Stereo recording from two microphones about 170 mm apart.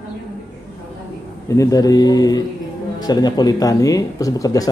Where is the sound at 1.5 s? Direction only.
20° left (ahead or behind).